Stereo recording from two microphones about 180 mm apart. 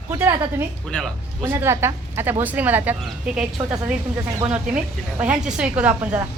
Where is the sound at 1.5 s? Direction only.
15° right (ahead or behind).